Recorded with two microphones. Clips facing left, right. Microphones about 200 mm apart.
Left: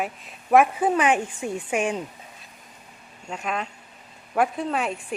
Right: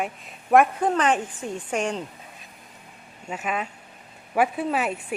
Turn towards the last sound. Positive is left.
turn(degrees=-5)  # may be behind; listen again after turning